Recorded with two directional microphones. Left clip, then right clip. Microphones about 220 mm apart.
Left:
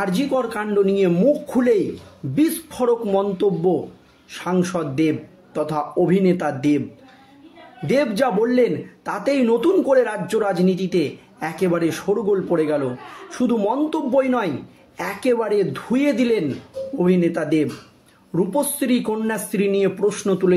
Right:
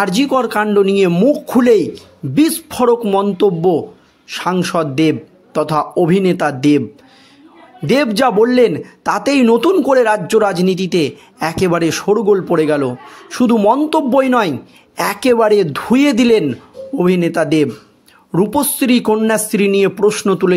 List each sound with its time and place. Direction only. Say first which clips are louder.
0.0 s speech: right 7 dB; 40° right (ahead or behind)
7.8 s speech: right 6 dB; 45° right (ahead or behind)